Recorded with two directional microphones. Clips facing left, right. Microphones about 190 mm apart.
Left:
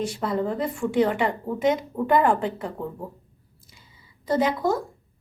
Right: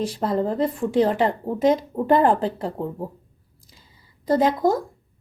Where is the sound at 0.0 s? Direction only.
35° right (ahead or behind).